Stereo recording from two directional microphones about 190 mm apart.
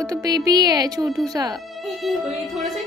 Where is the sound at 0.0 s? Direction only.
20° right (ahead or behind).